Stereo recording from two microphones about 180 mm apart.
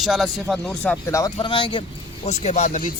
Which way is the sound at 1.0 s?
20° left (ahead or behind).